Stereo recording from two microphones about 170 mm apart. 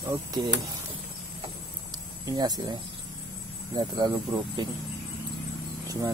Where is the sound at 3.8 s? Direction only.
25° right (ahead or behind).